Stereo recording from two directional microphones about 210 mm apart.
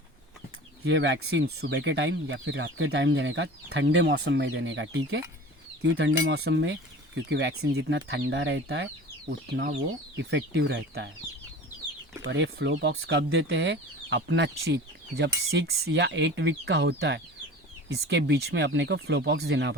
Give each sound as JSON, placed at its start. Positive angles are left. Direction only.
{"t": 0.9, "sound": "speech", "side_deg": -55}
{"t": 12.2, "sound": "speech", "side_deg": -60}